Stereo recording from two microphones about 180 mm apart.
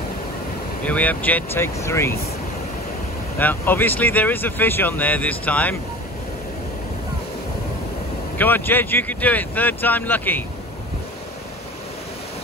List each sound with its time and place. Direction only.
0.8 s speech: 10° left (ahead or behind)
3.3 s speech: 10° left (ahead or behind)
8.4 s speech: 10° left (ahead or behind)